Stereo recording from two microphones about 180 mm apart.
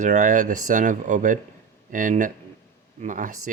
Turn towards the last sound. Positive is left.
turn(degrees=-45)  # may be behind; listen again after turning